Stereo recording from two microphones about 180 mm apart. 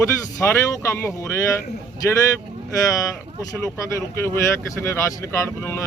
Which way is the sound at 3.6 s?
15° left (ahead or behind).